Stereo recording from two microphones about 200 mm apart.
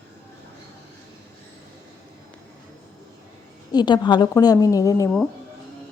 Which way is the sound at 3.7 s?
20° left (ahead or behind).